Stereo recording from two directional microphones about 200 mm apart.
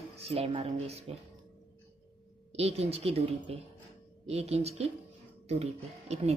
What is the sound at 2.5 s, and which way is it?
A woman's voice, 30° right (ahead or behind).